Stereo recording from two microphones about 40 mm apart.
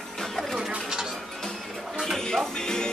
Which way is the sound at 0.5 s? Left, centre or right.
Centre.